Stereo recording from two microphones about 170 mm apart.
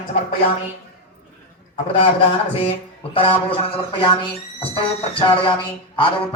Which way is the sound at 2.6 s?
30° left (ahead or behind).